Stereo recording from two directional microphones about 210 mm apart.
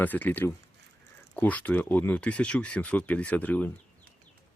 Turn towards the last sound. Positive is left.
turn(degrees=5)  # may be behind; listen again after turning